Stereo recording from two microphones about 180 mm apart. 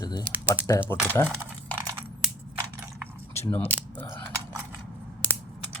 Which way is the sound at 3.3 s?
15° left (ahead or behind).